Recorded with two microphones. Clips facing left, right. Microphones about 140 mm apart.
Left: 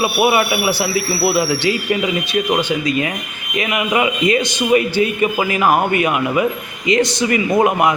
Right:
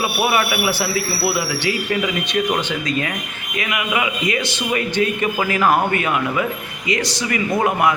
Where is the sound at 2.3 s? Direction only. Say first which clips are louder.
Left 3 dB; 10° left (ahead or behind).